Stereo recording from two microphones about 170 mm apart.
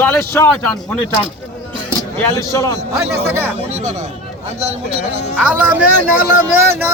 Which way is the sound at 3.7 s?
40° right (ahead or behind).